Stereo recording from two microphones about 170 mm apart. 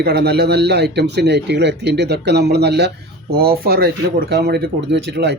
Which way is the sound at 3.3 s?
65° right (ahead or behind).